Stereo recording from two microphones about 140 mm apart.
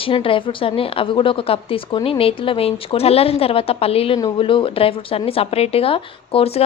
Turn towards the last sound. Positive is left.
turn(degrees=45)  # may be behind; listen again after turning